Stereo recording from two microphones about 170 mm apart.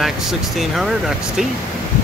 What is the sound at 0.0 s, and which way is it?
Speech, centre (ahead or behind).